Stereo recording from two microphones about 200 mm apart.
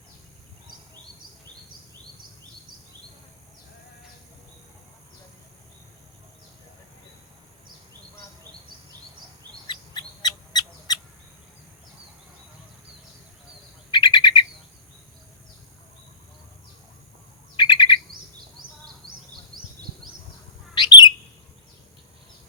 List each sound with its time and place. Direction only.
9.6 s bird: 20° left (ahead or behind)
13.9 s bird: 20° left (ahead or behind)
17.6 s bird: 20° left (ahead or behind)
19.5 s a sound: 45° right (ahead or behind)
20.7 s bird: 20° left (ahead or behind)